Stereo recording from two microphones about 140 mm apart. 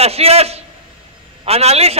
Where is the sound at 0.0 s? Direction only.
45° right (ahead or behind).